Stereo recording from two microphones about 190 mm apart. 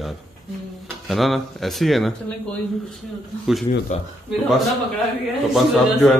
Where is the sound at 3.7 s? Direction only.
30° left (ahead or behind).